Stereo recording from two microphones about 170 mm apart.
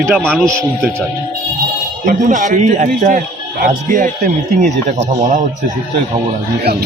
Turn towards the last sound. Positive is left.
turn(degrees=-45)  # may be behind; listen again after turning